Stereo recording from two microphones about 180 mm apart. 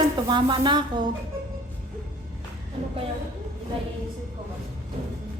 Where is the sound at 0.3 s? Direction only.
25° right (ahead or behind).